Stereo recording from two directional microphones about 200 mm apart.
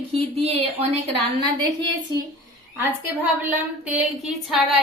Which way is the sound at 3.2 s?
10° right (ahead or behind).